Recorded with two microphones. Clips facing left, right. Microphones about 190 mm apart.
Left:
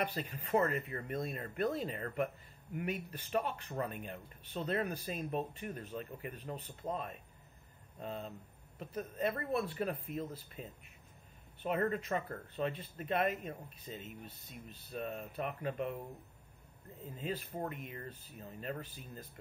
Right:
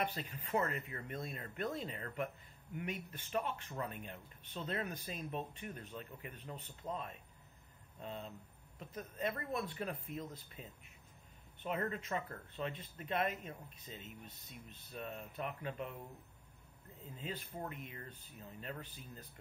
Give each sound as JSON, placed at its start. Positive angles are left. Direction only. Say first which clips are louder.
{"t": 0.3, "sound": "speech", "louder": "left 8 dB", "side_deg": 40}
{"t": 9.5, "sound": "speech", "louder": "left 5 dB", "side_deg": 35}
{"t": 17.0, "sound": "speech", "louder": "left 5 dB", "side_deg": 40}